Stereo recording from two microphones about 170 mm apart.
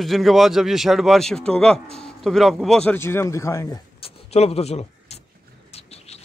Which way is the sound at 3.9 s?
35° left (ahead or behind).